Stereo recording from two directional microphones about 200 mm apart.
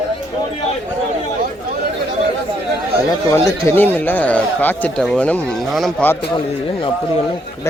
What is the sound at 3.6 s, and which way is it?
Speech, 10° left (ahead or behind).